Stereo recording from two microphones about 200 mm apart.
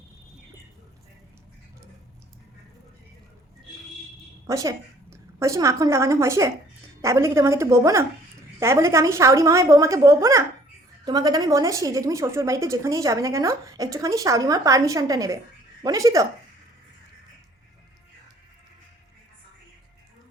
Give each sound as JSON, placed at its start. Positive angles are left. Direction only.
{"t": 4.4, "sound": "a woman's voice", "side_deg": -15}